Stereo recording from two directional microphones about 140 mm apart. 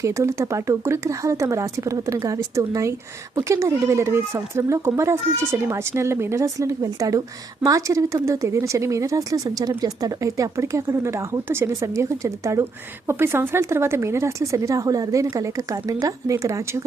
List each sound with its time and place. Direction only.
0.0 s speech: 20° right (ahead or behind)